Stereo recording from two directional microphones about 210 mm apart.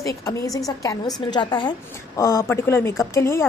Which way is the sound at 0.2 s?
15° left (ahead or behind).